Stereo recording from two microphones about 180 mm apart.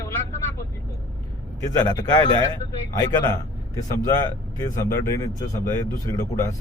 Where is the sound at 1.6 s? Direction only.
20° left (ahead or behind).